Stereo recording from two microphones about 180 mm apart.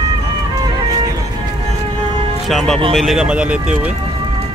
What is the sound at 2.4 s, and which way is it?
Speech, centre (ahead or behind).